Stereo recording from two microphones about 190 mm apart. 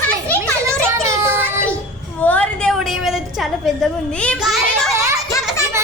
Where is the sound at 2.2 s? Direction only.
5° left (ahead or behind).